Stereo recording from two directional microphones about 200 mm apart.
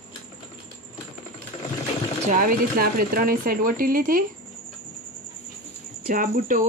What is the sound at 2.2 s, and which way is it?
Speech, 40° right (ahead or behind).